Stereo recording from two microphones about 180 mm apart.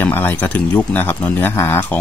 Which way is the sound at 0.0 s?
10° left (ahead or behind).